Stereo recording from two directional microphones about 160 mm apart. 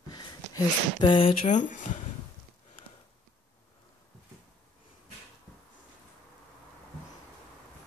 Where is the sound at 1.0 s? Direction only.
35° left (ahead or behind).